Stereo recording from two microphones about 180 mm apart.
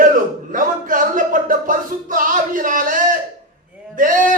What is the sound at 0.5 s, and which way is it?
Music, 50° right (ahead or behind).